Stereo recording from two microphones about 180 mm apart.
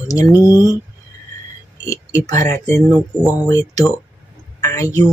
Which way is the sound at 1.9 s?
15° left (ahead or behind).